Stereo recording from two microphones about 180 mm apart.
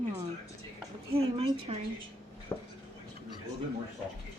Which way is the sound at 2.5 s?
15° left (ahead or behind).